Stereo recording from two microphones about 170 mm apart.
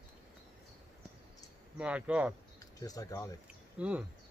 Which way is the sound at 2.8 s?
20° left (ahead or behind).